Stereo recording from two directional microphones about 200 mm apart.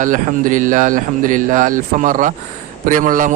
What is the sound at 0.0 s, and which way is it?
A man's voice, 40° right (ahead or behind).